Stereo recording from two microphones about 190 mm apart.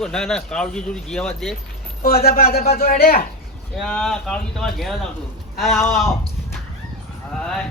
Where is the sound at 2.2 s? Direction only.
55° left (ahead or behind).